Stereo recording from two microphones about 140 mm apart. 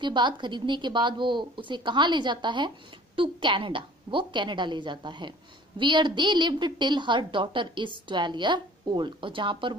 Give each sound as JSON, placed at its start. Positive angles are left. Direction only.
{"t": 0.0, "sound": "a woman's voice", "side_deg": -35}